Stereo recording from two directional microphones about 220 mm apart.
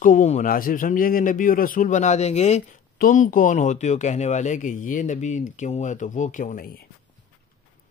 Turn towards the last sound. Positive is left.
turn(degrees=45)  # may be behind; listen again after turning